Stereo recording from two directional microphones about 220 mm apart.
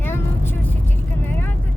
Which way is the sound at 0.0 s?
10° left (ahead or behind).